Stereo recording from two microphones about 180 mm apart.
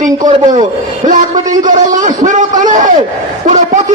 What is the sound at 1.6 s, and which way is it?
A man's voice, 45° right (ahead or behind).